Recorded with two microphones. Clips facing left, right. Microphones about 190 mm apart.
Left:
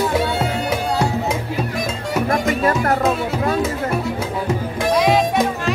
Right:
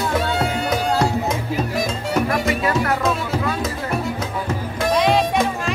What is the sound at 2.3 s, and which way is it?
Music, 45° left (ahead or behind).